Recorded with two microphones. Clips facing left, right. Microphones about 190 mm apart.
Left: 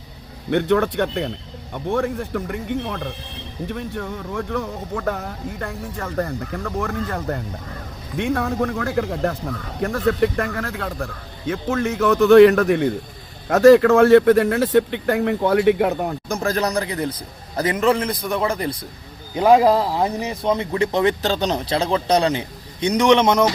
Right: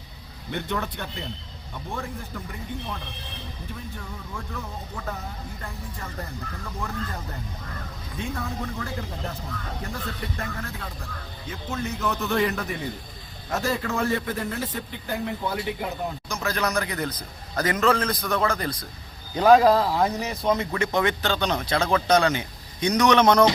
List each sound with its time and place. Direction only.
0.5 s a man's voice: 70° left (ahead or behind)
16.4 s a man's voice: 40° left (ahead or behind); by 20.5 s 15° left (ahead or behind)
20.5 s a man's voice: 30° left (ahead or behind)